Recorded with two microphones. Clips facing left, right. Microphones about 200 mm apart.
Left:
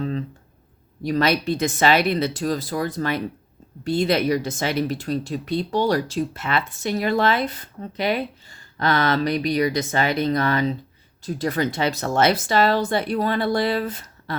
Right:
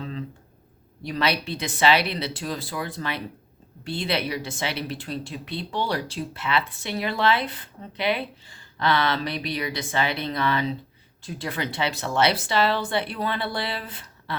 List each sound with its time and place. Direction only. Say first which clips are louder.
1.0 s speech: left 6 dB; 45° left (ahead or behind)